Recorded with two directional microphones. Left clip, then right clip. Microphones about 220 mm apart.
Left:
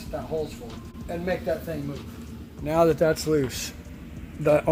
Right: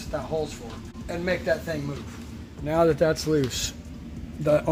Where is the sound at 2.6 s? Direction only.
5° left (ahead or behind).